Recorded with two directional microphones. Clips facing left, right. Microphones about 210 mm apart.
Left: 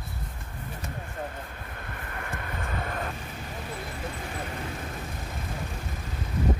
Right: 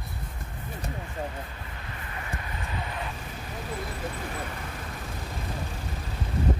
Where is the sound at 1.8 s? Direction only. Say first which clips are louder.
Left 2 dB; 55° left (ahead or behind).